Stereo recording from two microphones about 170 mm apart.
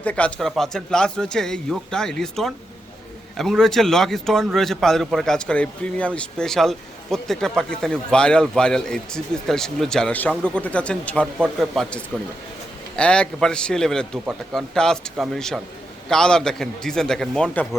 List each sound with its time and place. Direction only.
0.0 s a man's voice: 10° left (ahead or behind)